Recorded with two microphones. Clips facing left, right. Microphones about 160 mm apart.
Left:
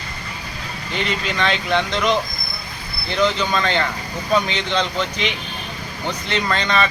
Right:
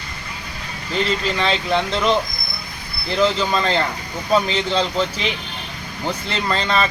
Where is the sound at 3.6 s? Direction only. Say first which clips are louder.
Right 1 dB; 35° right (ahead or behind).